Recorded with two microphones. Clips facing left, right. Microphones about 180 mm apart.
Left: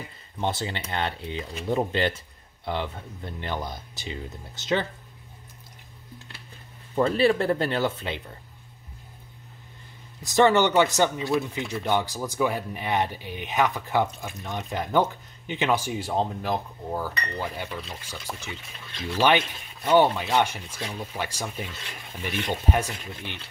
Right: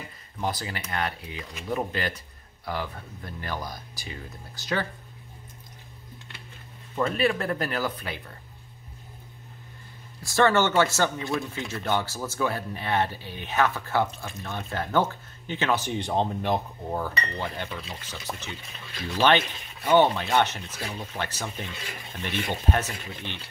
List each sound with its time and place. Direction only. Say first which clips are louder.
0.4 s speech: left 2 dB; 25° left (ahead or behind)
7.0 s speech: left 4 dB; 30° left (ahead or behind)
10.2 s speech: left 2 dB; 20° left (ahead or behind)